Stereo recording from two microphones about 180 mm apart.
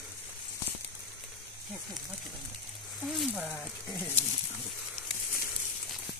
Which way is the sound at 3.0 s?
5° right (ahead or behind).